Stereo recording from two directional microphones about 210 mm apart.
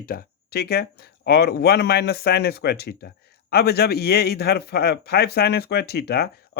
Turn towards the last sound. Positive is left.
turn(degrees=50)  # may be behind; listen again after turning